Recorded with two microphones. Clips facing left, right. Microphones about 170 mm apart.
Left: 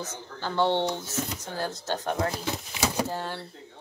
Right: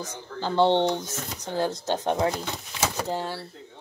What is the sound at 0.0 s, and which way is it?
Speech, 15° right (ahead or behind).